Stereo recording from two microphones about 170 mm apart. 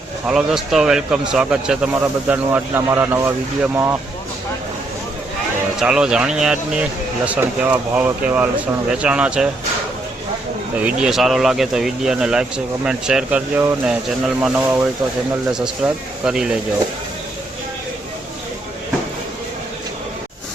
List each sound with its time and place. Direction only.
0.3 s speech: 5° right (ahead or behind)
5.8 s speech: 5° right (ahead or behind)
10.8 s speech: 5° right (ahead or behind)